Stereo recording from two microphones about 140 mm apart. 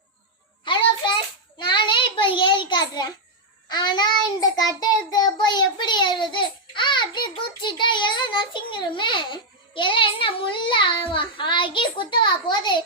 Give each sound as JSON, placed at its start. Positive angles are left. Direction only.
{"t": 0.6, "sound": "music", "side_deg": 35}
{"t": 1.5, "sound": "child singing", "side_deg": 35}